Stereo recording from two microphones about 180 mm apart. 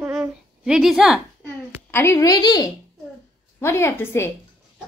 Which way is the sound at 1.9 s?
15° left (ahead or behind).